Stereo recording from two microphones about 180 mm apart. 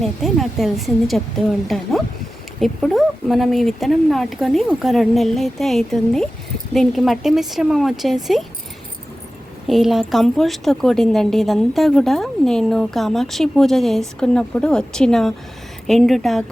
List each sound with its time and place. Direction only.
0.0 s a woman's voice: centre (ahead or behind)
9.6 s a woman's voice: centre (ahead or behind)